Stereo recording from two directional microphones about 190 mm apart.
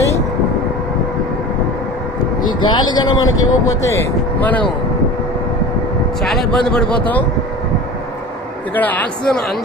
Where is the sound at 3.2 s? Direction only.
90° left.